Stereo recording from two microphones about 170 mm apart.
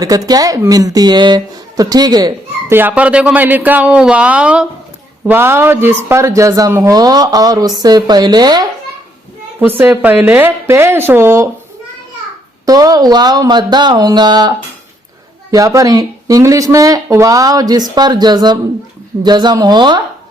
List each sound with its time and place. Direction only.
0.0 s speech: 20° right (ahead or behind)
9.6 s speech: 10° right (ahead or behind)
12.6 s speech: 20° right (ahead or behind)
15.5 s speech: 20° right (ahead or behind)